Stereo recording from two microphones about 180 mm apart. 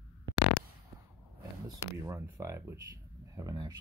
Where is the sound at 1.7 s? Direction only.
15° right (ahead or behind).